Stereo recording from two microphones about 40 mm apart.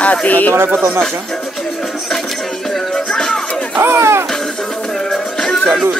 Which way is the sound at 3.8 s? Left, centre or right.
Right.